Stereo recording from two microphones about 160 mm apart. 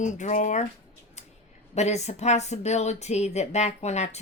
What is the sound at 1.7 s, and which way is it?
Speech, 45° left (ahead or behind).